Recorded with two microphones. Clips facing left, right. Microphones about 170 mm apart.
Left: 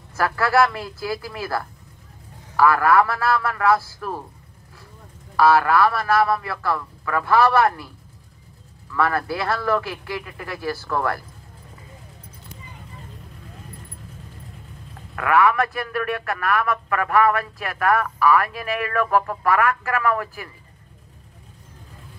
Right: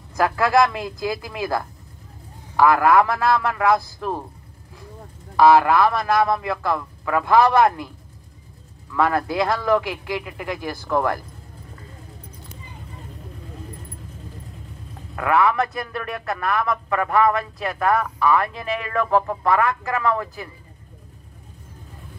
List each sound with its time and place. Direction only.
0.1 s speech: 15° right (ahead or behind)
5.3 s speech: 15° right (ahead or behind)
8.9 s speech: 20° right (ahead or behind)
15.1 s a man's voice: 25° right (ahead or behind)